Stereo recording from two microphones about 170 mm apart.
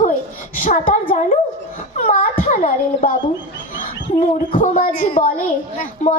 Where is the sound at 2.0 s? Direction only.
50° left (ahead or behind).